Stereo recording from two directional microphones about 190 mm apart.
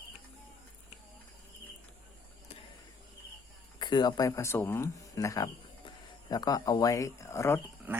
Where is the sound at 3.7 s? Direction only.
25° left (ahead or behind).